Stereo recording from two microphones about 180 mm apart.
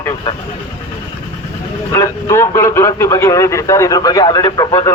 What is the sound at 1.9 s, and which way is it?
A man's voice, 15° left (ahead or behind).